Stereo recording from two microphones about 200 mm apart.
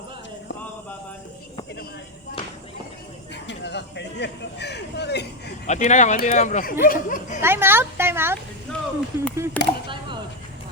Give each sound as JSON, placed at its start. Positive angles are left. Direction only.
{"t": 3.4, "sound": "speech", "side_deg": 60}
{"t": 5.6, "sound": "speech", "side_deg": 35}
{"t": 7.4, "sound": "speech", "side_deg": -10}
{"t": 8.7, "sound": "a sound", "side_deg": 5}
{"t": 9.1, "sound": "speech", "side_deg": -15}
{"t": 9.6, "sound": "speech", "side_deg": 5}